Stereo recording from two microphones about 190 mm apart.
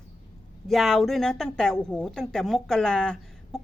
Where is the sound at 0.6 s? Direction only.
Centre (ahead or behind).